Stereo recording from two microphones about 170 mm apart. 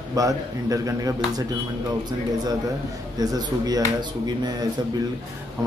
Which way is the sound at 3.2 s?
20° right (ahead or behind).